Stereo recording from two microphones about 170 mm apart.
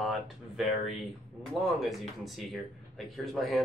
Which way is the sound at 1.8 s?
Centre (ahead or behind).